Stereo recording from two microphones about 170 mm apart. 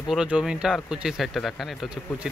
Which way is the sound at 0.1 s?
5° right (ahead or behind).